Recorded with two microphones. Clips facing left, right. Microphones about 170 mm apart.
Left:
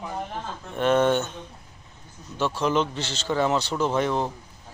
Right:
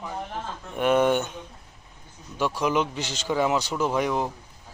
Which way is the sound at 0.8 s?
10° right (ahead or behind).